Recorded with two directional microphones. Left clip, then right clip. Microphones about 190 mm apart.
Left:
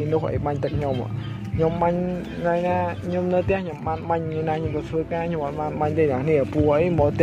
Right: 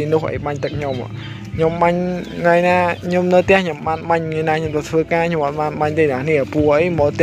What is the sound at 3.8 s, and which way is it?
A man's voice, 15° right (ahead or behind).